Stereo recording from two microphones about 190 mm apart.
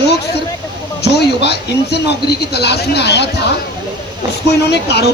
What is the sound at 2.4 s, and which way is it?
Speech, 60° left (ahead or behind).